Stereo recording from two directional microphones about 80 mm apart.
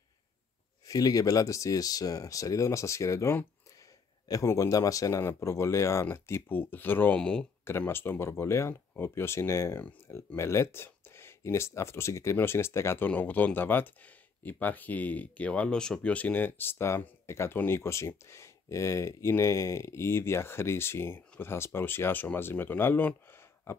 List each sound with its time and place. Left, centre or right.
0.8 s speech: left
4.5 s speech: left
5.2 s speech: left
7.2 s speech: centre
7.6 s speech: left
13.1 s speech: left